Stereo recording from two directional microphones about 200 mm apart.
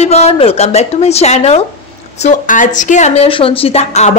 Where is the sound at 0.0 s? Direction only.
30° left (ahead or behind).